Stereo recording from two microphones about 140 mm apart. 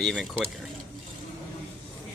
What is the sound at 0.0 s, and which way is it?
Speech, 5° left (ahead or behind).